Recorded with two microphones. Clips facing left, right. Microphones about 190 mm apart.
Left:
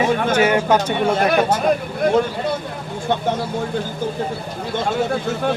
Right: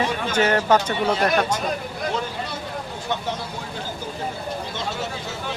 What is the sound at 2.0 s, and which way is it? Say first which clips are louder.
Speech: left 11 dB; 55° left (ahead or behind).